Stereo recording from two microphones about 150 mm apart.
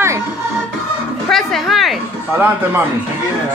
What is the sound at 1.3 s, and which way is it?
Speech, centre (ahead or behind).